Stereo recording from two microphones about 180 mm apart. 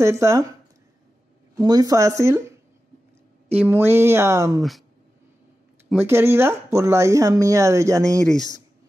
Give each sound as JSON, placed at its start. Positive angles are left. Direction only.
{"t": 0.0, "sound": "speech", "side_deg": -15}
{"t": 1.6, "sound": "speech", "side_deg": -20}
{"t": 3.6, "sound": "speech", "side_deg": -15}
{"t": 4.6, "sound": "speech", "side_deg": 0}
{"t": 5.9, "sound": "speech", "side_deg": -15}
{"t": 8.2, "sound": "speech", "side_deg": 5}